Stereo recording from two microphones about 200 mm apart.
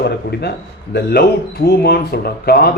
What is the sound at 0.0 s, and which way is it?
A man's voice, 55° left (ahead or behind).